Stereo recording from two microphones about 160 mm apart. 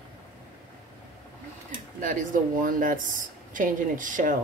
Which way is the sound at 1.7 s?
55° right (ahead or behind).